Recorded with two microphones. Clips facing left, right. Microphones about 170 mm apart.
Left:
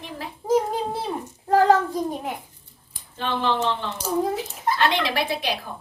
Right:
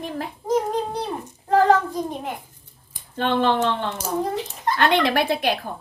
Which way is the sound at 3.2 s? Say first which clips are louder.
Right 4 dB; 55° right (ahead or behind).